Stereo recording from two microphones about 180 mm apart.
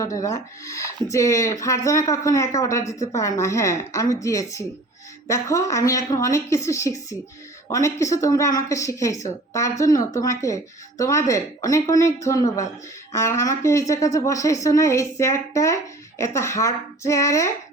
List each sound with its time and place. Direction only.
0.0 s a woman's voice: 20° left (ahead or behind)